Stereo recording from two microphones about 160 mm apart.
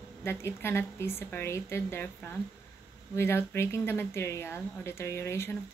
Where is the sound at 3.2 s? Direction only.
15° left (ahead or behind).